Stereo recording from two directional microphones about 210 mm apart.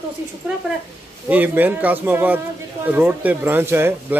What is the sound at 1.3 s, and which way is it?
A man's voice, 10° right (ahead or behind).